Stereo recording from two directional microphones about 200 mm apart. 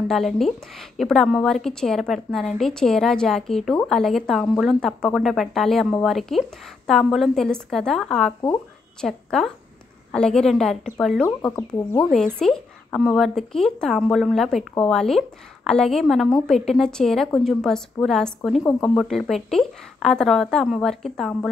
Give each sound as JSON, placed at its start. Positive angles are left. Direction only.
{"t": 0.1, "sound": "a woman's voice", "side_deg": 0}
{"t": 11.2, "sound": "speech", "side_deg": 15}
{"t": 12.0, "sound": "a woman's voice", "side_deg": 5}